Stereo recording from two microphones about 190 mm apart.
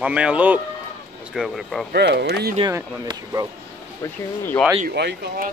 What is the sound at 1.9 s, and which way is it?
Speech, 60° right (ahead or behind).